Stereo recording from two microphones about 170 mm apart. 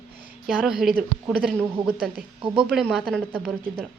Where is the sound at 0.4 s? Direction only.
Centre (ahead or behind).